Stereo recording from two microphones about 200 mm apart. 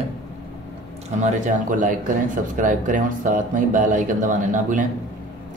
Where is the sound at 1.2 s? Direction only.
40° right (ahead or behind).